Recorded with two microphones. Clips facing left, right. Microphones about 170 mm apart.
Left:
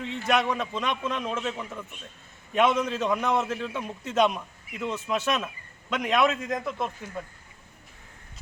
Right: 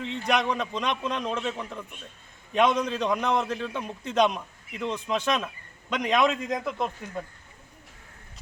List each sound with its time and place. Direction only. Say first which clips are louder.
0.0 s a man's voice: left 1 dB; 5° left (ahead or behind)